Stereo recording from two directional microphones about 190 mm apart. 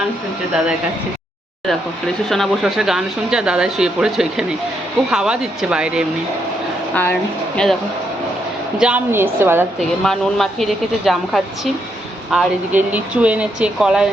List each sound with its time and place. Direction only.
2.3 s speech: centre (ahead or behind)
6.9 s speech: 10° left (ahead or behind)
8.8 s a woman's voice: 10° right (ahead or behind)
10.0 s speech: centre (ahead or behind)